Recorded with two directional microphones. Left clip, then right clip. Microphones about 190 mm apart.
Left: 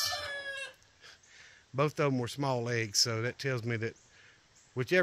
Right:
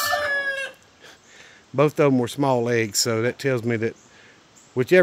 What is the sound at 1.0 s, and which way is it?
Speech, 5° right (ahead or behind).